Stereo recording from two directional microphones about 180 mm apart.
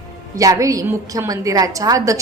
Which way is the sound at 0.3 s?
20° right (ahead or behind).